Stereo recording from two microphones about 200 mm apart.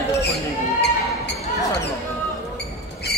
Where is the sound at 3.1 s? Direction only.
55° left (ahead or behind).